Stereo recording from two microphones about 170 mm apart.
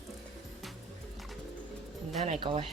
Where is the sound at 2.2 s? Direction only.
35° right (ahead or behind).